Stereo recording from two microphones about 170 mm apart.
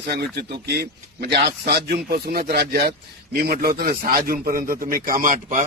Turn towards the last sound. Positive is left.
turn(degrees=-45)  # may be behind; listen again after turning